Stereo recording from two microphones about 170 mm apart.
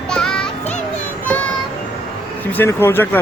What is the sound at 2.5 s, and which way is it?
Speech, 15° left (ahead or behind).